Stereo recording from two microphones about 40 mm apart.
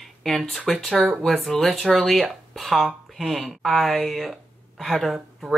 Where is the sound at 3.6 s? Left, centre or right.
Centre.